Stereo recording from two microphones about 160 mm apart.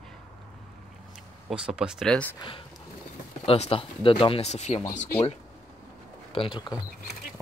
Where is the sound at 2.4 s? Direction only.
30° left (ahead or behind).